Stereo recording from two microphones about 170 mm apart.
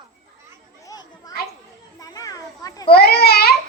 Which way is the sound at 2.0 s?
20° left (ahead or behind).